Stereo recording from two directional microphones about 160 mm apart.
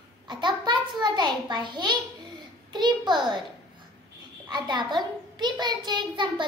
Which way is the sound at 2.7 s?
25° right (ahead or behind).